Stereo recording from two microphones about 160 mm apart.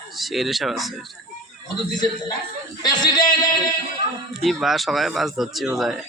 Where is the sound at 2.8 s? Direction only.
25° left (ahead or behind).